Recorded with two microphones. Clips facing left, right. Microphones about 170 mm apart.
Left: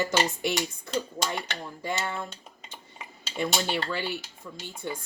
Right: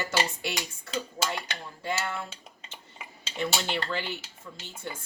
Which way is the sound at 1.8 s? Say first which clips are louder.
Even; 15° left (ahead or behind).